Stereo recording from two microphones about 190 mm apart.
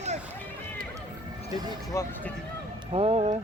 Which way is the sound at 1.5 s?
20° right (ahead or behind).